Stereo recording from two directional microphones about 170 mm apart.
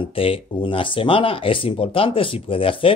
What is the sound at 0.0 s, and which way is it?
Speech, 30° left (ahead or behind).